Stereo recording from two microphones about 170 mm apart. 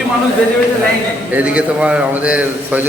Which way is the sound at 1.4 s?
5° right (ahead or behind).